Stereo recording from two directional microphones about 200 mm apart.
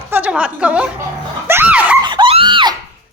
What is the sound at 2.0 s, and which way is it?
Dog, 25° right (ahead or behind).